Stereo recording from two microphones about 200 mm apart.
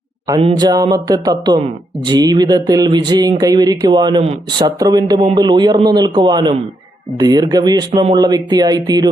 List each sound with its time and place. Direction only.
0.3 s speech: 25° right (ahead or behind)